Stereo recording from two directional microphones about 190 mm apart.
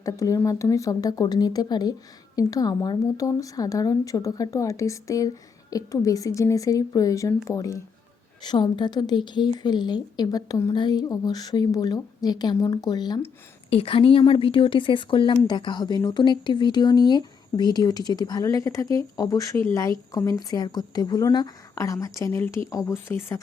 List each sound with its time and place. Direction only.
0.0 s speech: 15° left (ahead or behind)